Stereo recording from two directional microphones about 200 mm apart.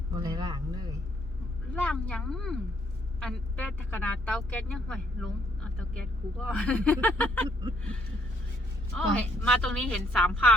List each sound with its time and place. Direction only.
0.1 s a sound: 20° right (ahead or behind)
1.7 s speech: 5° left (ahead or behind)
6.4 s speech: 5° left (ahead or behind)
8.9 s speech: 5° left (ahead or behind)